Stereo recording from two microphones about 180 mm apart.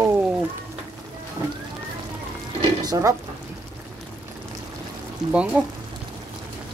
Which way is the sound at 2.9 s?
20° right (ahead or behind).